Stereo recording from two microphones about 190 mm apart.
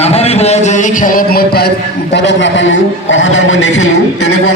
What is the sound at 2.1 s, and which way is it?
A man's voice, 70° left (ahead or behind).